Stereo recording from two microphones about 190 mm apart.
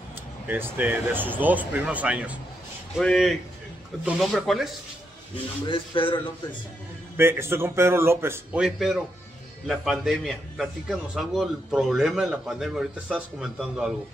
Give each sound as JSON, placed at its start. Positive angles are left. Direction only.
{"t": 0.5, "sound": "a man's voice", "side_deg": -10}
{"t": 5.7, "sound": "speech", "side_deg": 30}
{"t": 7.2, "sound": "a man's voice", "side_deg": -15}